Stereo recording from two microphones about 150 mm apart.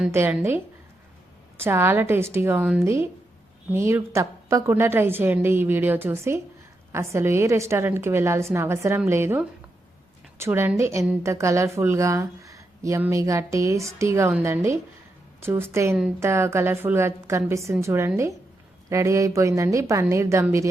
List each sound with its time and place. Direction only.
0.1 s a woman's voice: 15° right (ahead or behind)
1.6 s a woman's voice: 15° right (ahead or behind)